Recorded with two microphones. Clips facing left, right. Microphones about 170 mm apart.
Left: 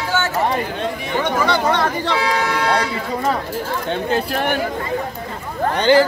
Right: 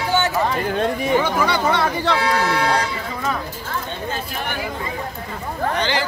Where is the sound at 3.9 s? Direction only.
65° left (ahead or behind).